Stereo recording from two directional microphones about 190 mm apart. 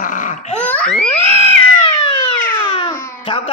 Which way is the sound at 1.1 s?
30° left (ahead or behind).